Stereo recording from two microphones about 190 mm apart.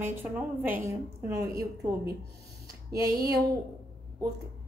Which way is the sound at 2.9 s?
15° right (ahead or behind).